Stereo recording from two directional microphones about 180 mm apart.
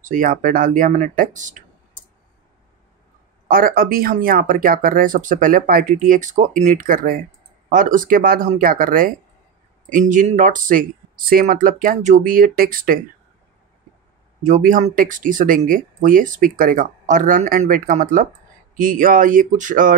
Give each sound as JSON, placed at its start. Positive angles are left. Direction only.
{"t": 0.0, "sound": "speech", "side_deg": -50}
{"t": 3.4, "sound": "speech", "side_deg": -55}
{"t": 14.4, "sound": "speech", "side_deg": -45}